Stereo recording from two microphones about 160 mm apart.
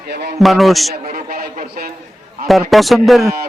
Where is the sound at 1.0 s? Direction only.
65° right (ahead or behind).